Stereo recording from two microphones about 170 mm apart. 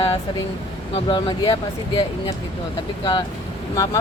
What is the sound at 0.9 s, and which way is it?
Speech, 30° left (ahead or behind).